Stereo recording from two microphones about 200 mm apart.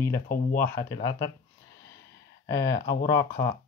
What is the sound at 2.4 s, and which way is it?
Speech, 15° left (ahead or behind).